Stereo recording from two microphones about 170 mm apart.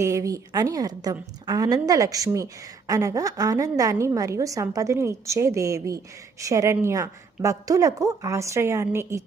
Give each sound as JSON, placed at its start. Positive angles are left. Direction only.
{"t": 0.0, "sound": "a woman's voice", "side_deg": -20}